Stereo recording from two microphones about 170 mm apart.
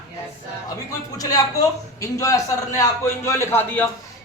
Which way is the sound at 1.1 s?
20° left (ahead or behind).